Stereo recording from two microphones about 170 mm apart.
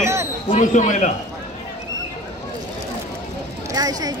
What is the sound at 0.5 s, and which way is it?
Speech, 45° left (ahead or behind).